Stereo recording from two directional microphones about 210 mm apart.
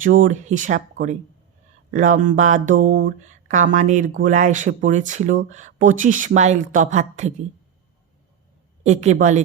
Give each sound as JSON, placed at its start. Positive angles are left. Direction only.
{"t": 0.0, "sound": "speech", "side_deg": -40}
{"t": 8.8, "sound": "speech", "side_deg": -35}